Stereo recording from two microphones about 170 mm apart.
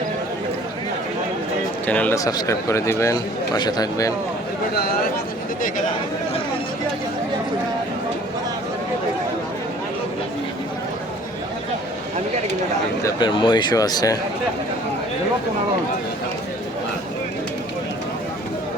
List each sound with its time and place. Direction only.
1.9 s speech: 10° left (ahead or behind)
2.1 s a man's voice: 20° left (ahead or behind)
13.0 s a man's voice: 20° left (ahead or behind)